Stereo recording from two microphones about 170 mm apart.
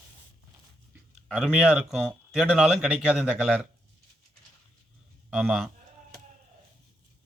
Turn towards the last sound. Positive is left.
turn(degrees=-5)  # may be behind; listen again after turning